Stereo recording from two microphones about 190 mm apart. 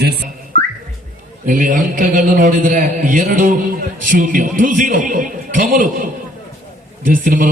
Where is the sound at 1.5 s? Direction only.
45° right (ahead or behind).